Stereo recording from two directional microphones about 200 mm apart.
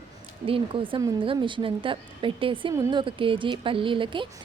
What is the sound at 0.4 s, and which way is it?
A woman's voice, 25° right (ahead or behind).